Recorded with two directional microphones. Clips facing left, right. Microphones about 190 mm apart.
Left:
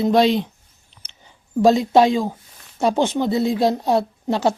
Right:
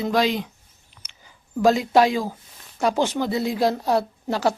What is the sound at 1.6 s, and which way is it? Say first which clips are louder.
A woman's voice: left 3 dB; 25° left (ahead or behind).